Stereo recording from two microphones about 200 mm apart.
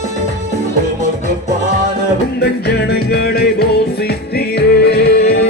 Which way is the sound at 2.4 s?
50° left (ahead or behind).